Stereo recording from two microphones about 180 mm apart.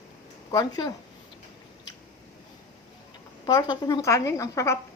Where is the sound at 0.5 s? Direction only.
20° left (ahead or behind).